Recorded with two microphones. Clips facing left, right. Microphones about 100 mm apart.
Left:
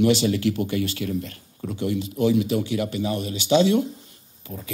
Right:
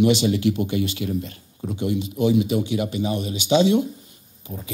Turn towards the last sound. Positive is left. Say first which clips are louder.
# right 1 dB
turn(degrees=-10)  # may be behind; listen again after turning